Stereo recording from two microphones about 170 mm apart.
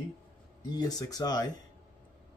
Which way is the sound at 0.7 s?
25° left (ahead or behind).